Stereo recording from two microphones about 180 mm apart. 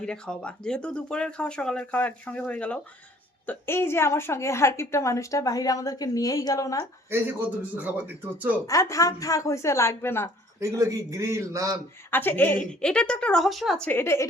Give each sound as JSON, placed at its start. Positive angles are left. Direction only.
{"t": 0.0, "sound": "a woman's voice", "side_deg": 5}
{"t": 7.1, "sound": "a man's voice", "side_deg": -10}
{"t": 8.6, "sound": "a woman's voice", "side_deg": 20}
{"t": 10.6, "sound": "a man's voice", "side_deg": -15}
{"t": 12.1, "sound": "speech", "side_deg": 10}
{"t": 13.8, "sound": "a woman's voice", "side_deg": 10}